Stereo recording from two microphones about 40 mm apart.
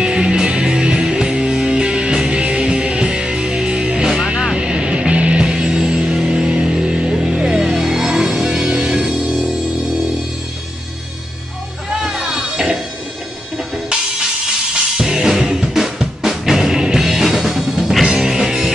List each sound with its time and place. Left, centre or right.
0.0 s music: right
4.1 s music: centre
4.6 s music: right
11.9 s music: centre
13.9 s music: centre